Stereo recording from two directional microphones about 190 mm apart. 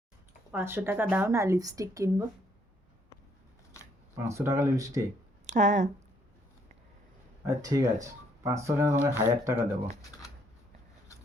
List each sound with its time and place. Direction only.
0.5 s a woman's voice: 10° right (ahead or behind)
4.3 s a woman's voice: 15° right (ahead or behind)
5.5 s speech: 40° right (ahead or behind)
7.4 s a woman's voice: 15° right (ahead or behind)